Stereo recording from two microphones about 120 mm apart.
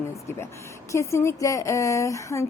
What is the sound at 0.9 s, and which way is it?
A woman's voice, 25° left (ahead or behind).